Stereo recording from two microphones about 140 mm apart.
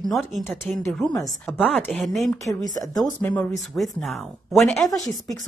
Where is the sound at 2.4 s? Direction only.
25° left (ahead or behind).